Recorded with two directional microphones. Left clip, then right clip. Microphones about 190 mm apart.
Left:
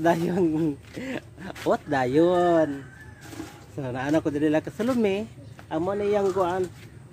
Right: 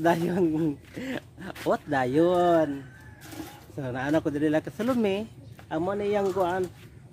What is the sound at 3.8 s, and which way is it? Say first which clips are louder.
Speech: left 1 dB; 5° right (ahead or behind).